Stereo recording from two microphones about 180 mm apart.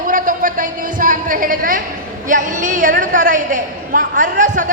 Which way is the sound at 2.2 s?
45° right (ahead or behind).